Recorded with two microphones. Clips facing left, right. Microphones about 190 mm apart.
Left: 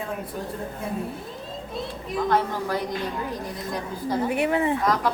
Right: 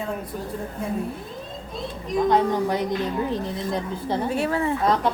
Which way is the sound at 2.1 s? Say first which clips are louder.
Right 4 dB; 20° right (ahead or behind).